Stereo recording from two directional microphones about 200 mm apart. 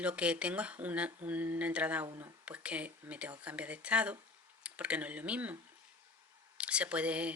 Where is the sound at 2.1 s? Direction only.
20° right (ahead or behind).